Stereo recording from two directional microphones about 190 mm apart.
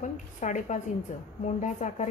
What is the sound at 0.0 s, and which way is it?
Speech, 40° left (ahead or behind).